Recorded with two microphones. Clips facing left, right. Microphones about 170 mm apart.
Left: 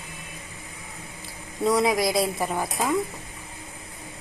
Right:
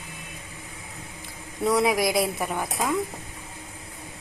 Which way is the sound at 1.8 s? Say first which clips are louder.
Even; 25° left (ahead or behind).